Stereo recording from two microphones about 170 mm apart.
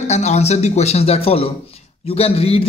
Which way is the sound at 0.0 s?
40° left (ahead or behind).